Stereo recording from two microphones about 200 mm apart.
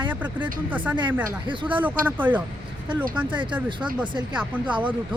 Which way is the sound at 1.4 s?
25° right (ahead or behind).